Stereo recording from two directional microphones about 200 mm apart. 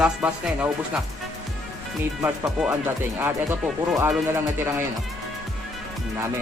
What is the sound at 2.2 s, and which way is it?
Speech, 10° right (ahead or behind).